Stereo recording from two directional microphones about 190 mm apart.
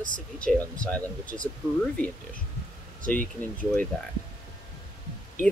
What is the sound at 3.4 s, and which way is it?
Speech, 10° left (ahead or behind).